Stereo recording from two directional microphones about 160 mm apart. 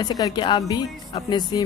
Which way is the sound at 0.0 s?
25° left (ahead or behind).